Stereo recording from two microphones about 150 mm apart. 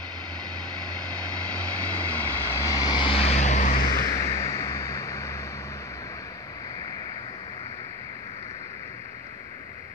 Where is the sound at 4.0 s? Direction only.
20° left (ahead or behind).